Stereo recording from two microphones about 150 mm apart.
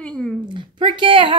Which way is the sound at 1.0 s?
35° right (ahead or behind).